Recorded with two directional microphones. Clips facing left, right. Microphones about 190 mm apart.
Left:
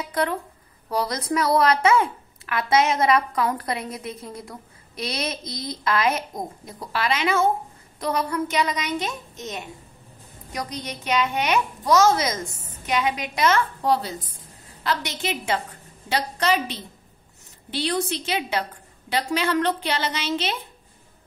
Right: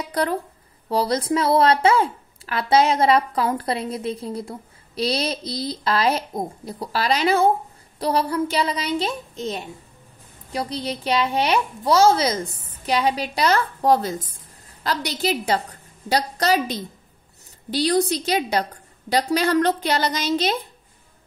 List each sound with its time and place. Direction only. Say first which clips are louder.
0.1 s speech: right 2 dB; 35° right (ahead or behind)